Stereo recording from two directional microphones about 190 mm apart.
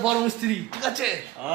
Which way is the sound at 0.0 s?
Centre (ahead or behind).